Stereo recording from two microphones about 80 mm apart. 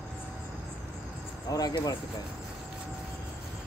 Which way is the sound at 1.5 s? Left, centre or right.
Left.